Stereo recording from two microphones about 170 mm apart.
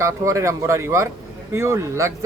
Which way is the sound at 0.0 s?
20° right (ahead or behind).